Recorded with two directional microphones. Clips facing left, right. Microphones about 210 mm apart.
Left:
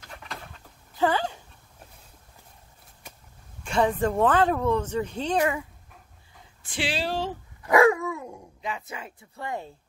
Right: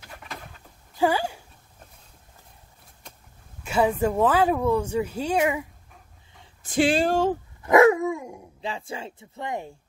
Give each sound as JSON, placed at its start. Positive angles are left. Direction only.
{"t": 0.9, "sound": "speech", "side_deg": -10}
{"t": 3.6, "sound": "a woman's voice", "side_deg": -5}
{"t": 6.6, "sound": "speech", "side_deg": -45}
{"t": 7.6, "sound": "dog", "side_deg": -25}
{"t": 8.5, "sound": "speech", "side_deg": -30}